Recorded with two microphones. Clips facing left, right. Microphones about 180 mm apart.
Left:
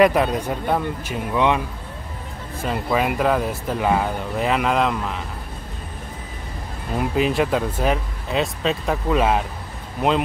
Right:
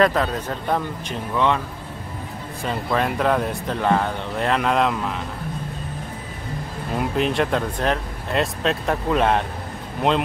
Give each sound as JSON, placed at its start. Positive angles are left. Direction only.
{"t": 0.0, "sound": "speech", "side_deg": 15}
{"t": 2.6, "sound": "speech", "side_deg": 5}
{"t": 7.0, "sound": "speech", "side_deg": 5}